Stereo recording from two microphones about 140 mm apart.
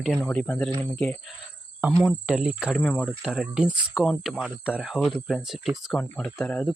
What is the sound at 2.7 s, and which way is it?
Speech, 10° left (ahead or behind).